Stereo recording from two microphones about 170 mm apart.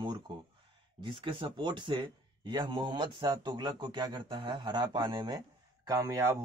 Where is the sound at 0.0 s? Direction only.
25° right (ahead or behind).